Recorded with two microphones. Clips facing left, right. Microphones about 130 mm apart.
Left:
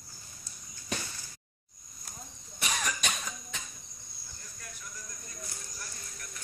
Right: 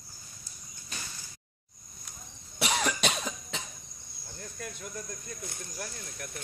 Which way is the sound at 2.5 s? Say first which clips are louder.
Right 5 dB; 85° right.